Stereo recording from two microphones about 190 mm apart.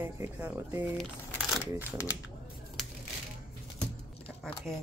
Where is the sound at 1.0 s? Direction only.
Centre (ahead or behind).